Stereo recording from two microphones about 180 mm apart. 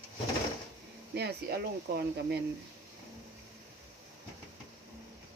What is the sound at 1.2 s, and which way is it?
Speech, 65° right (ahead or behind).